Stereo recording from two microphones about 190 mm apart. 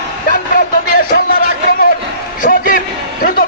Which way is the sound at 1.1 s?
50° left (ahead or behind).